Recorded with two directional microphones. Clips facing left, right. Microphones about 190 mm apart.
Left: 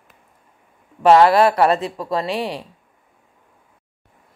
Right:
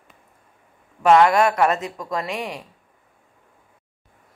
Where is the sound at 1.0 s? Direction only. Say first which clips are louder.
Left 3 dB; 35° left (ahead or behind).